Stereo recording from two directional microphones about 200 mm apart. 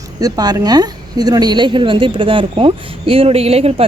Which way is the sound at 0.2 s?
20° right (ahead or behind).